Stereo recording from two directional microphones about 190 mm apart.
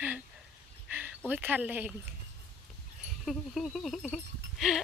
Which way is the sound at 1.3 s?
10° right (ahead or behind).